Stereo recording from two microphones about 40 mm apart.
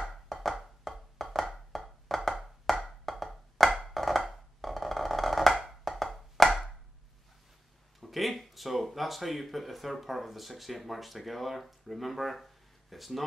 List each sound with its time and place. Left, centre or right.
0.1 s music: centre
1.4 s a sound: centre
1.8 s wood block: centre
6.4 s chopping: centre
8.0 s speech: centre